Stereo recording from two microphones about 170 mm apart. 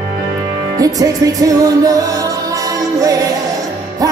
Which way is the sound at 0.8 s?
20° right (ahead or behind).